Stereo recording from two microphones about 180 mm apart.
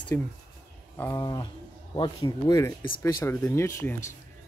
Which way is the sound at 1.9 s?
20° left (ahead or behind).